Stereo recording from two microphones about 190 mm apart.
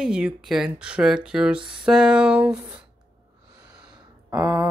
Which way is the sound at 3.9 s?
20° right (ahead or behind).